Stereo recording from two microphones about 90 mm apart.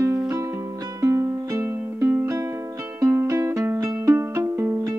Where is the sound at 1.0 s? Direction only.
35° right (ahead or behind).